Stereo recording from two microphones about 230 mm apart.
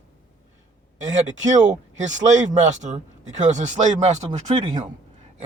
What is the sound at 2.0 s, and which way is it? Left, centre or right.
Speech, right.